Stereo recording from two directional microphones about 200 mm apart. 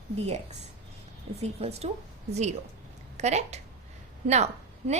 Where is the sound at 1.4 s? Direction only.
30° right (ahead or behind).